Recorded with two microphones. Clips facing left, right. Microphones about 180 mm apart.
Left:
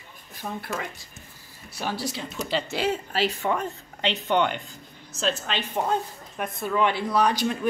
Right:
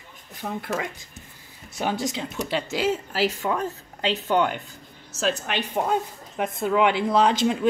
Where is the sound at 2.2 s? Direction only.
10° right (ahead or behind).